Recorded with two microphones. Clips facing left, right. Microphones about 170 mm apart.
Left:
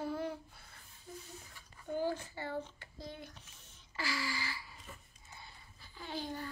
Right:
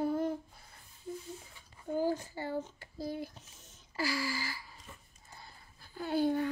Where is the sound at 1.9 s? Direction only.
40° right (ahead or behind).